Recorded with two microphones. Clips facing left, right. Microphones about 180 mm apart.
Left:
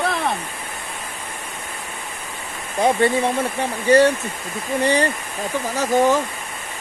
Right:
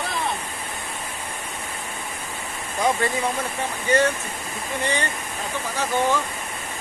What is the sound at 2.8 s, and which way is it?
Speech, 30° left (ahead or behind).